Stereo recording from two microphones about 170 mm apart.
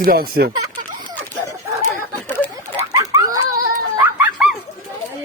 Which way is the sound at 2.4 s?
10° left (ahead or behind).